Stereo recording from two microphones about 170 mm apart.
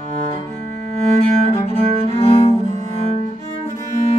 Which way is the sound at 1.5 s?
35° left (ahead or behind).